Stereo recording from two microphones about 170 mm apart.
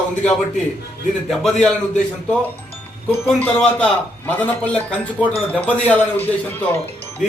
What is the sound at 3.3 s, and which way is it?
A man's voice, 5° left (ahead or behind).